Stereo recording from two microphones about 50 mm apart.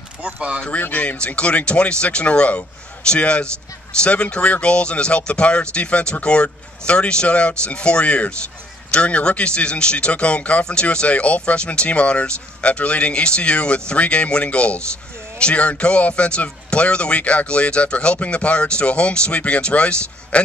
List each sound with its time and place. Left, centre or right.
0.2 s speech: right
0.7 s speech: left
1.1 s speech: left